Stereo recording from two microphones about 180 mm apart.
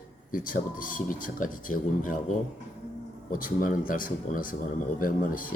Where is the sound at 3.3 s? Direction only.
50° left (ahead or behind).